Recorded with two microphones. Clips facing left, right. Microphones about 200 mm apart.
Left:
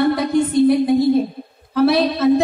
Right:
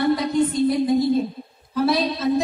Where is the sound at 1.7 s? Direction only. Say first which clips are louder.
Left 5 dB; 65° left (ahead or behind).